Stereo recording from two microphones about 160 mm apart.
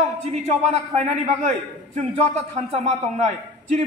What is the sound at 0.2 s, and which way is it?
A man's voice, 45° right (ahead or behind).